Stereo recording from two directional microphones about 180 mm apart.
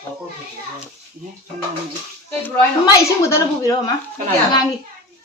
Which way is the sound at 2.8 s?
15° left (ahead or behind).